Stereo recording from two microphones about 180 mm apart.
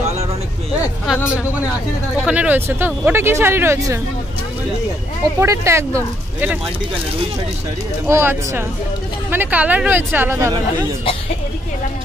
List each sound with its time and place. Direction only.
0.7 s speech: 5° right (ahead or behind)
5.4 s speech: 15° right (ahead or behind)
8.1 s speech: 15° right (ahead or behind)